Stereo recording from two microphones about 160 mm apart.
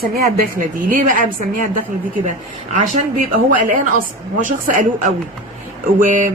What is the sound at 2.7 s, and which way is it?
A woman's voice, 50° right (ahead or behind).